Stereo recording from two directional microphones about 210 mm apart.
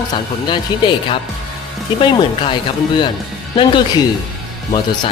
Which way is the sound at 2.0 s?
25° left (ahead or behind).